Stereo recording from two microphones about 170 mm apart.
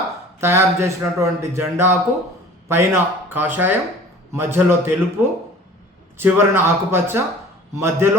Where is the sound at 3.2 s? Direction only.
10° right (ahead or behind).